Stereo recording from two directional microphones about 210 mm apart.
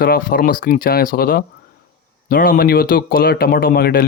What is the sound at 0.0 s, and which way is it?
Speech, 45° left (ahead or behind).